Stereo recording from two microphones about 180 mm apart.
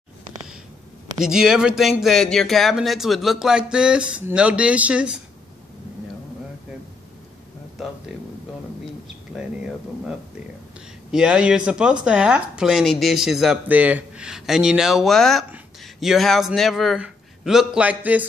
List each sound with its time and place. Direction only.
1.2 s speech: 5° right (ahead or behind)
9.3 s speech: 5° right (ahead or behind)